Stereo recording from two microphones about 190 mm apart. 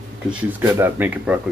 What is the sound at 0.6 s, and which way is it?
Speech, 10° right (ahead or behind).